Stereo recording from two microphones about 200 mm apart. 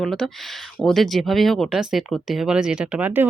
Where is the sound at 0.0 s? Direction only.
Centre (ahead or behind).